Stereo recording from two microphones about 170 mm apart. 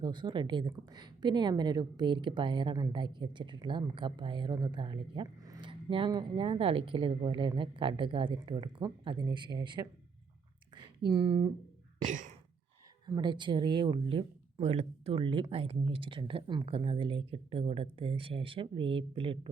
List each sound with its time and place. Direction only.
0.0 s speech: 25° right (ahead or behind)
12.0 s sigh: 45° right (ahead or behind)
13.1 s speech: 25° right (ahead or behind)